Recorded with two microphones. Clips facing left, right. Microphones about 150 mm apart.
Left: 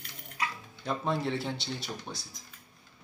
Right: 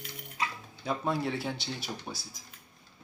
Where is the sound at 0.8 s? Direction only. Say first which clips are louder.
Even; centre (ahead or behind).